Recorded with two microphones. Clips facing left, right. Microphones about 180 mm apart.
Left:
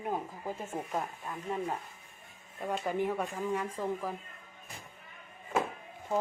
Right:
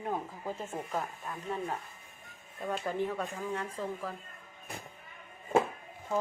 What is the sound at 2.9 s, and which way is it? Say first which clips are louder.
Speech: left 3 dB; 15° left (ahead or behind).